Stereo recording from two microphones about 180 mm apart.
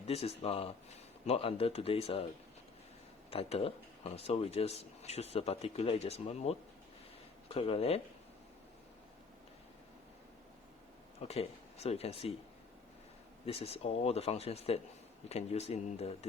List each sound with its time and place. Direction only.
0.0 s speech: 35° left (ahead or behind)
3.2 s speech: 30° left (ahead or behind)
11.2 s speech: 35° left (ahead or behind)
13.4 s speech: 35° left (ahead or behind)